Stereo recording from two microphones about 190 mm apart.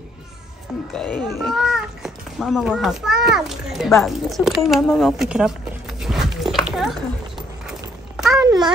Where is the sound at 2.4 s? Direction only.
5° right (ahead or behind).